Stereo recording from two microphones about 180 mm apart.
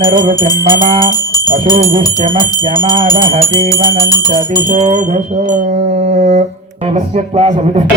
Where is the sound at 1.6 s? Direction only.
50° right (ahead or behind).